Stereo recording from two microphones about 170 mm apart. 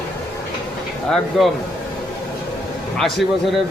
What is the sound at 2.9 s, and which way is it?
Speech, centre (ahead or behind).